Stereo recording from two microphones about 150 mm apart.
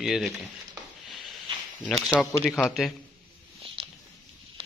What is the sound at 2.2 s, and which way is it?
Speech, 10° left (ahead or behind).